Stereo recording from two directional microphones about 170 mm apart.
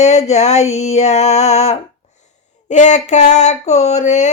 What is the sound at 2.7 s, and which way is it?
Speech, 45° left (ahead or behind).